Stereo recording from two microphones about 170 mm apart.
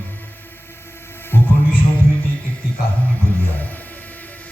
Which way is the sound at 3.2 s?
10° left (ahead or behind).